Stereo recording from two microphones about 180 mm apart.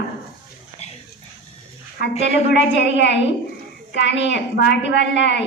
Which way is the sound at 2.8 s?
75° left (ahead or behind).